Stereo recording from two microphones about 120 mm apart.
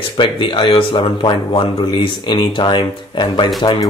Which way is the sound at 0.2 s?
45° left (ahead or behind).